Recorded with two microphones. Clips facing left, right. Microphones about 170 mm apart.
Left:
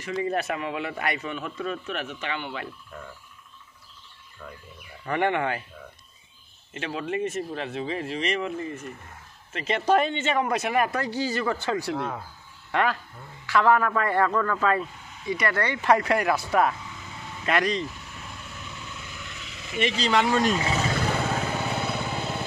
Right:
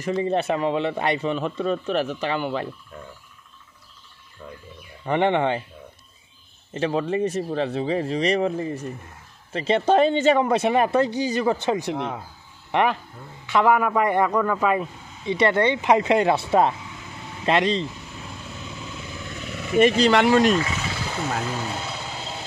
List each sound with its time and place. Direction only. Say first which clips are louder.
0.0 s a man's voice: right 5 dB; 30° right (ahead or behind)
5.0 s speech: right 5 dB; 25° right (ahead or behind)
6.7 s a man's voice: right 7 dB; 35° right (ahead or behind); by 14.9 s 15° right (ahead or behind)
15.2 s speech: right 7 dB; 25° right (ahead or behind)
19.4 s speech: right 10 dB; 55° right (ahead or behind); by 20.5 s 80° right
21.8 s vehicle: left 4 dB; 55° left (ahead or behind)